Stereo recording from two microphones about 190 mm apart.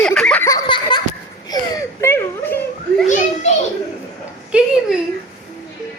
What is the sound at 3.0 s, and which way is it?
Children playing, 35° left (ahead or behind).